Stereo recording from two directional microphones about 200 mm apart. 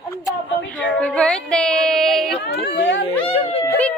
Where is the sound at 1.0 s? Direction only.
5° left (ahead or behind).